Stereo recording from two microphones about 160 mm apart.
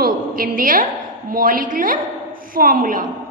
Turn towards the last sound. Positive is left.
turn(degrees=-60)  # may be behind; listen again after turning